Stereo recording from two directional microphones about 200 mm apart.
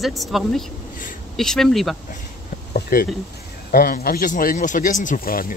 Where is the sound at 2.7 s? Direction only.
50° left (ahead or behind).